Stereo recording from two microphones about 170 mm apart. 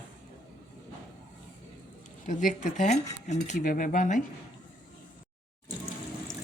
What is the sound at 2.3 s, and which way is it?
Speech, 50° left (ahead or behind).